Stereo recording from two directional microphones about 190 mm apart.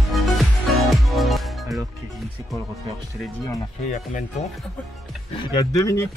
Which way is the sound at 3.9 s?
40° left (ahead or behind).